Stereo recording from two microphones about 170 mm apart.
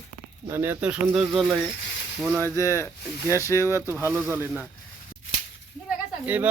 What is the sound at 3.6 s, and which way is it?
Speech, 15° right (ahead or behind).